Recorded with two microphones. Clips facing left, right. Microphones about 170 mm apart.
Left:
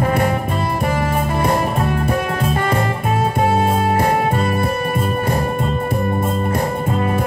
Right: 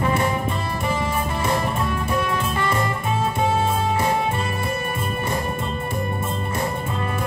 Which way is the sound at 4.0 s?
55° left (ahead or behind).